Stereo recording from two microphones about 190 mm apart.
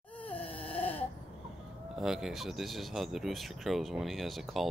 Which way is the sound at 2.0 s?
Centre (ahead or behind).